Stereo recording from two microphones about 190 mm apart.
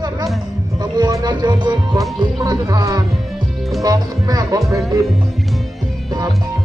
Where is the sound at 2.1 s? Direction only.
20° right (ahead or behind).